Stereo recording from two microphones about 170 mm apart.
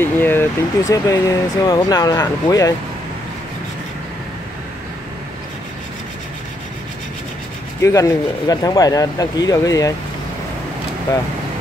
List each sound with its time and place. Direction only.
0.0 s speech: 10° left (ahead or behind)
7.8 s speech: 20° left (ahead or behind)